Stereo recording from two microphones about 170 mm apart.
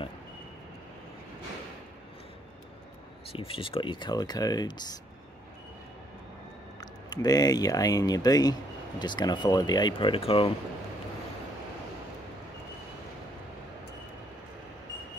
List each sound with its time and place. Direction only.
3.3 s speech: 30° left (ahead or behind)
6.8 s speech: 25° left (ahead or behind)